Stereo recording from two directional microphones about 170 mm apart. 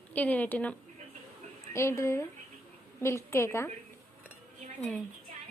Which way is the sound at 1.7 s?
15° left (ahead or behind).